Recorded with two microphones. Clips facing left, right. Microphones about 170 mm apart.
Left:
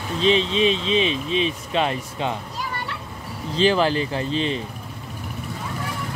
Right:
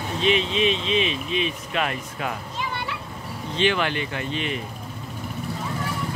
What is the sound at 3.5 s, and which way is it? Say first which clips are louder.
Speech: left 4 dB; 35° left (ahead or behind).